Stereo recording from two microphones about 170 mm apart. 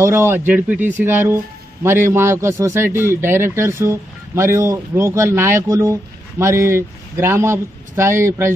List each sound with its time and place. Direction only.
0.0 s speech: 15° right (ahead or behind)